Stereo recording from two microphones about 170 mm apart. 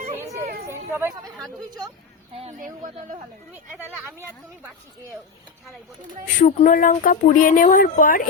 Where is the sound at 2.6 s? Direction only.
50° right (ahead or behind).